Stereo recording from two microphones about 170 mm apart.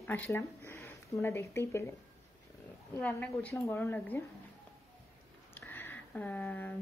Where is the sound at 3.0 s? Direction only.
15° left (ahead or behind).